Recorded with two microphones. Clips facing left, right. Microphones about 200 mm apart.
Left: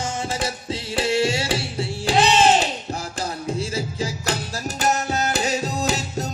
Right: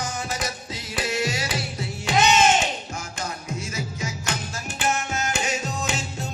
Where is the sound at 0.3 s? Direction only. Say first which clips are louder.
Left 5 dB; 30° left (ahead or behind).